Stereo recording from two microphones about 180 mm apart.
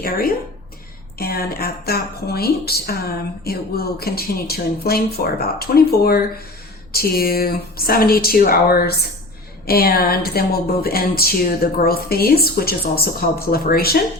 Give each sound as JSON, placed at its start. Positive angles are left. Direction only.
{"t": 0.0, "sound": "speech", "side_deg": 55}